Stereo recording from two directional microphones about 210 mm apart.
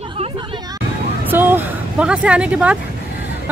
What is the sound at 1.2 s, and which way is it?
Speech, 10° right (ahead or behind).